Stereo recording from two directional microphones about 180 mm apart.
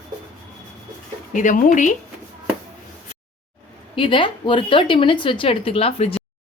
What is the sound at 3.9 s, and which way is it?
A woman's voice, 30° left (ahead or behind).